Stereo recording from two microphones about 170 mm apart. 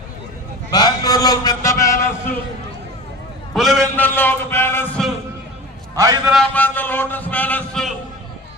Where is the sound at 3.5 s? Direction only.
Centre (ahead or behind).